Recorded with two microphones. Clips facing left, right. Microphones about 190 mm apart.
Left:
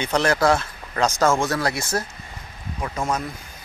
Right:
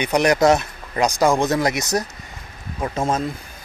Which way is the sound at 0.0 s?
15° right (ahead or behind).